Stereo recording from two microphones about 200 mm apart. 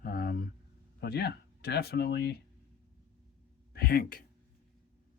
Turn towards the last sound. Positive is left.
turn(degrees=50)  # may be behind; listen again after turning